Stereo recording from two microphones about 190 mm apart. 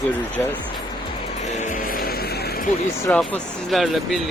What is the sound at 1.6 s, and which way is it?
Music, 45° left (ahead or behind).